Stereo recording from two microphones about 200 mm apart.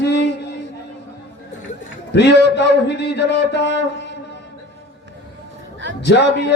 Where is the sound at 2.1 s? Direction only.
60° left (ahead or behind).